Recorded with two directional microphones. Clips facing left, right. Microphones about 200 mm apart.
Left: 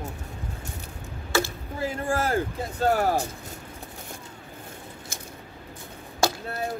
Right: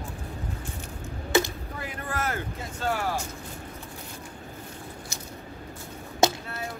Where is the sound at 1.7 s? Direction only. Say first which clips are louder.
Left 8 dB; 30° left (ahead or behind).